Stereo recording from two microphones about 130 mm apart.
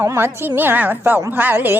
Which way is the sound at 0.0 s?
20° right (ahead or behind).